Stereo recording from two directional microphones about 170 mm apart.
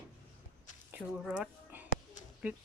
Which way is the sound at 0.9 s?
5° right (ahead or behind).